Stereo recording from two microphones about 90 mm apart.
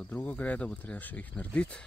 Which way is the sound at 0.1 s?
15° left (ahead or behind).